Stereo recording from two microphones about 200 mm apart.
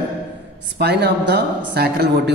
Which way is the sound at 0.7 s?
55° right (ahead or behind).